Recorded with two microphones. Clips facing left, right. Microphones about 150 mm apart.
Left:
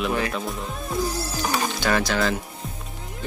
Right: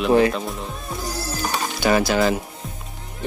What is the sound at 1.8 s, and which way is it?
Speech, 10° right (ahead or behind).